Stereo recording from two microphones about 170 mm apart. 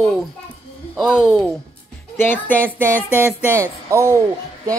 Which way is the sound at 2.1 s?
10° left (ahead or behind).